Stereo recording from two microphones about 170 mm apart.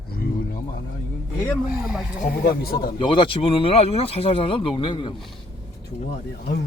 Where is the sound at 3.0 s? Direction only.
30° left (ahead or behind).